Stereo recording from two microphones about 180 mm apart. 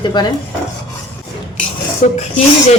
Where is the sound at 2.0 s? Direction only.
40° left (ahead or behind).